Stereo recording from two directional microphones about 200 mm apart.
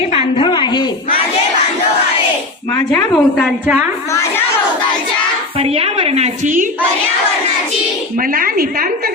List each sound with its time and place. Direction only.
0.1 s a sound: 25° left (ahead or behind)
2.9 s a woman's voice: centre (ahead or behind)
5.5 s a woman's voice: 30° right (ahead or behind)
8.3 s a woman's voice: 45° right (ahead or behind)